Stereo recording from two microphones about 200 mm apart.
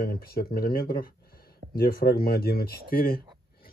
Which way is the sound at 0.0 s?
50° left (ahead or behind).